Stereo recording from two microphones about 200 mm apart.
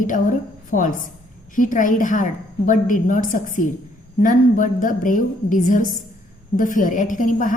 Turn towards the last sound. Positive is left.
turn(degrees=40)  # may be behind; listen again after turning